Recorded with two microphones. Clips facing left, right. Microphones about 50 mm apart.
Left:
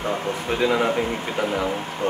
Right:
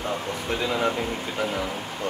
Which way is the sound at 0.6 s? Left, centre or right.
Left.